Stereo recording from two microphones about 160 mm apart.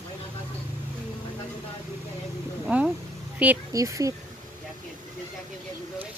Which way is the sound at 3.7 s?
20° right (ahead or behind).